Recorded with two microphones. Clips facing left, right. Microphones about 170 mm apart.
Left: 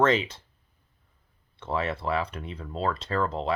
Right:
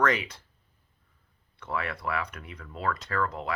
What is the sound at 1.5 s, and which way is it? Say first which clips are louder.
Speech: left 4 dB; 25° left (ahead or behind).